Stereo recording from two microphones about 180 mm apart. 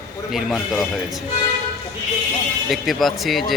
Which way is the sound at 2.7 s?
Centre (ahead or behind).